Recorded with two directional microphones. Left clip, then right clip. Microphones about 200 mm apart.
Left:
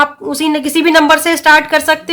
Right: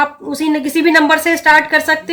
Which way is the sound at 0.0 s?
45° left (ahead or behind).